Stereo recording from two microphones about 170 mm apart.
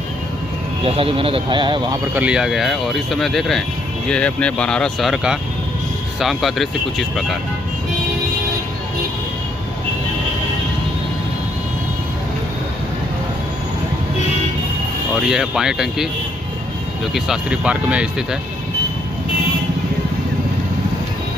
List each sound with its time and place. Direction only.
0.8 s speech: 35° right (ahead or behind)
2.1 s speech: 5° right (ahead or behind)
15.2 s speech: 5° right (ahead or behind)
17.1 s speech: 5° right (ahead or behind)